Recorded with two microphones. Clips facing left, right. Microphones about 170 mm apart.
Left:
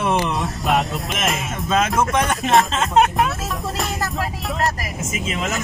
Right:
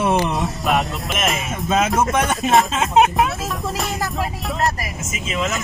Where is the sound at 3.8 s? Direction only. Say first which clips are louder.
Even; centre (ahead or behind).